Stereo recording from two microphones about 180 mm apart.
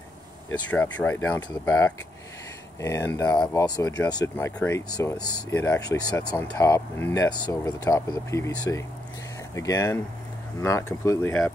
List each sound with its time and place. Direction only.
0.7 s speech: 10° left (ahead or behind)